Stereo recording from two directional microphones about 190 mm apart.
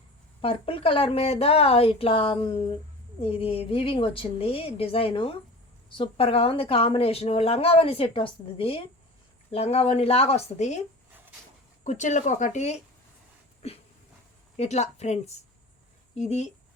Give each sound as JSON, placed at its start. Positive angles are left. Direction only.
{"t": 0.4, "sound": "a woman's voice", "side_deg": 30}
{"t": 14.5, "sound": "a woman's voice", "side_deg": 35}